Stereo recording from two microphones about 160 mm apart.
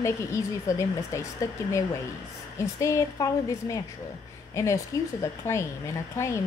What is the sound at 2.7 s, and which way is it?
A woman's voice, 20° left (ahead or behind).